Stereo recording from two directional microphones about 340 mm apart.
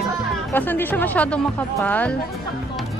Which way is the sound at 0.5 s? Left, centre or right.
Centre.